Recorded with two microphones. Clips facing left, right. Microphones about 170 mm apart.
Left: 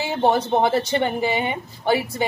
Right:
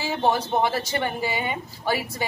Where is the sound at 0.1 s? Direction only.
25° left (ahead or behind).